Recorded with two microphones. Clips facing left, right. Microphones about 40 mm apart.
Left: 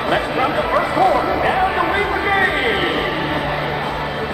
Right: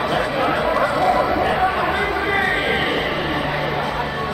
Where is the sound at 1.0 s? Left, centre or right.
Centre.